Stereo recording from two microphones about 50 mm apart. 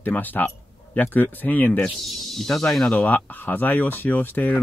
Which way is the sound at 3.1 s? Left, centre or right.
Left.